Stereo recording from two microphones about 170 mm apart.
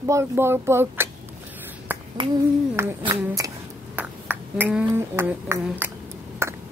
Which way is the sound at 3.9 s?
10° right (ahead or behind).